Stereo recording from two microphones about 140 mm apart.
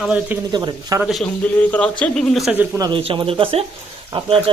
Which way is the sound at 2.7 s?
30° right (ahead or behind).